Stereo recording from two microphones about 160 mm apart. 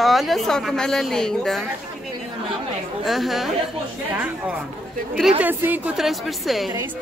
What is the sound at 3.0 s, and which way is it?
Speech, centre (ahead or behind).